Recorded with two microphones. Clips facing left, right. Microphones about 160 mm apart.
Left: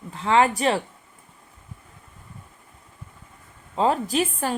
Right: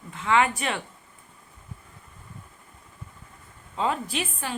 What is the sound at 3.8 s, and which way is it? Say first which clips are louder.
Speech: left 6 dB; 35° left (ahead or behind).